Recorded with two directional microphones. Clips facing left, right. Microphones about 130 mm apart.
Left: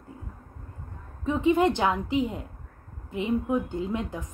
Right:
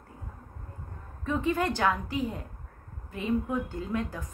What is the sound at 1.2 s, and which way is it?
Speech, 20° left (ahead or behind).